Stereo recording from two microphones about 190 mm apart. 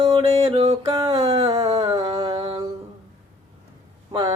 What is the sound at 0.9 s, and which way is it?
Music, 20° right (ahead or behind).